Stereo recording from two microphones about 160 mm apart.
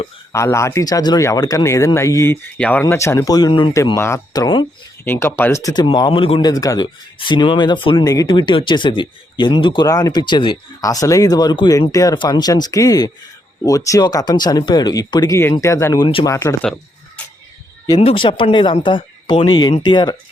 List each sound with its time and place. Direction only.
0.3 s speech: 20° left (ahead or behind)
5.0 s speech: 15° left (ahead or behind); by 6.5 s 35° left (ahead or behind)
6.5 s speech: 20° left (ahead or behind)
18.0 s speech: 30° left (ahead or behind)